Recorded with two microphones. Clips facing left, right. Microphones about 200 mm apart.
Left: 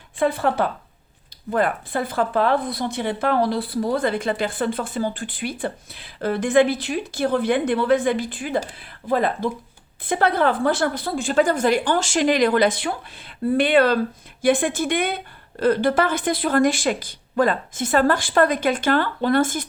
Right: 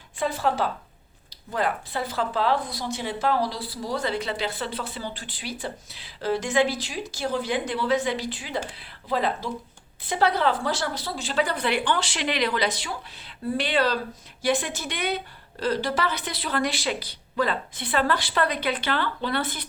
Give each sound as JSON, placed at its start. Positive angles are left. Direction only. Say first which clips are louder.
{"t": 0.2, "sound": "a woman's voice", "louder": "left 5 dB", "side_deg": 55}